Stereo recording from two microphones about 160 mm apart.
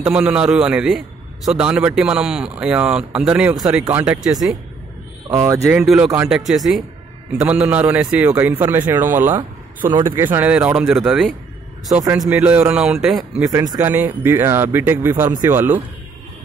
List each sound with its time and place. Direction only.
0.0 s a man's voice: 10° right (ahead or behind)
5.3 s a man's voice: 15° right (ahead or behind)
5.8 s a man's voice: 5° right (ahead or behind)
13.5 s a man's voice: 20° right (ahead or behind)